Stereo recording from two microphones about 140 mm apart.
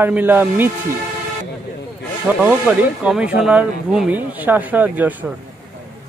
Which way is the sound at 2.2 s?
10° right (ahead or behind).